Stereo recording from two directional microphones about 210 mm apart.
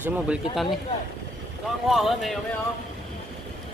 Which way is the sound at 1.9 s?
Centre (ahead or behind).